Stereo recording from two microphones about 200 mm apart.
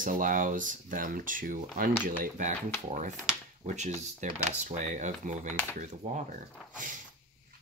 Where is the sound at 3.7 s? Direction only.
35° right (ahead or behind).